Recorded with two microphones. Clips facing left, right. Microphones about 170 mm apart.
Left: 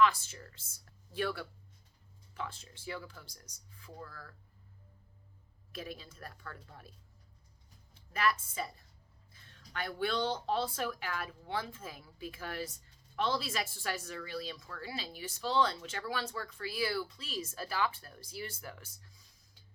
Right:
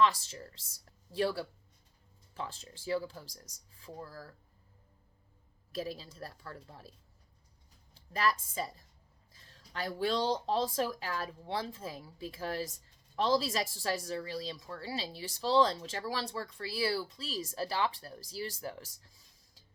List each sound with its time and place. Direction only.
0.0 s speech: 35° right (ahead or behind)
5.7 s speech: 35° right (ahead or behind)
7.9 s a woman's voice: 35° right (ahead or behind)